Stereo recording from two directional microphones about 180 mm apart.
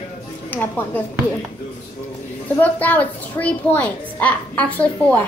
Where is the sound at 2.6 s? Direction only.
10° left (ahead or behind).